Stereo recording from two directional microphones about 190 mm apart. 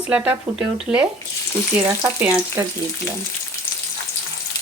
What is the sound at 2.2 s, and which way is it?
Speech, 10° right (ahead or behind).